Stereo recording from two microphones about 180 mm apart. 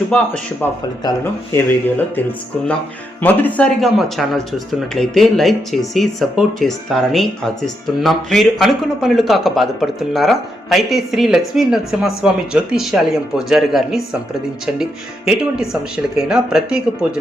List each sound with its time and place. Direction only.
0.1 s speech: 10° left (ahead or behind)
1.0 s speech: 20° left (ahead or behind)
3.2 s speech: 10° left (ahead or behind)
3.8 s speech: centre (ahead or behind)